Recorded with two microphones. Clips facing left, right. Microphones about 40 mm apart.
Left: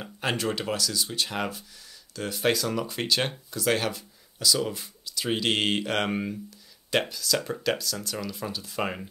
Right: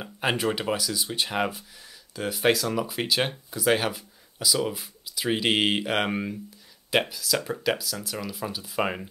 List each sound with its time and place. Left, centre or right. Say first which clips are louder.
0.0 s speech: right 3 dB; centre